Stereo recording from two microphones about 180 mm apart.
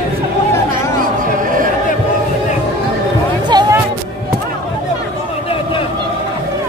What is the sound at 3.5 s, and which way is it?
Music, 25° right (ahead or behind).